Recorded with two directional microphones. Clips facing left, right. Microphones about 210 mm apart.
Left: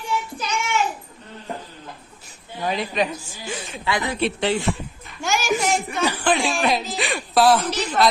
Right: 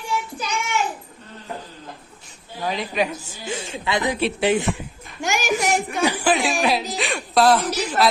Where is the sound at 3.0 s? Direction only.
20° right (ahead or behind).